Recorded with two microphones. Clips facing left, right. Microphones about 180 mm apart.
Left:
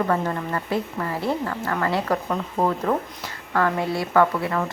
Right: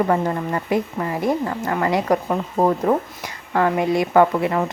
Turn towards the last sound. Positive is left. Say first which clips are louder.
# right 4 dB
turn(degrees=-20)  # may be behind; listen again after turning